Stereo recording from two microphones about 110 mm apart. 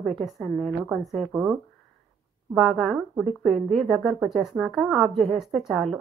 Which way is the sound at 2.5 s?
Centre (ahead or behind).